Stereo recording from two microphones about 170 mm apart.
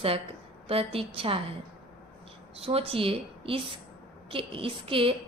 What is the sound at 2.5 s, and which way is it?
A woman's voice, 35° right (ahead or behind).